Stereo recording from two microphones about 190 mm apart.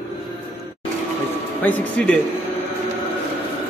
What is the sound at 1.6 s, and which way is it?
Speech, 10° left (ahead or behind).